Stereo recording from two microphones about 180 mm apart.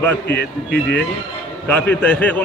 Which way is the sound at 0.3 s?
60° left (ahead or behind).